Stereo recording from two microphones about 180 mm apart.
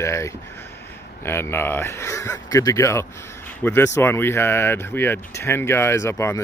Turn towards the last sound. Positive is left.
turn(degrees=15)  # may be behind; listen again after turning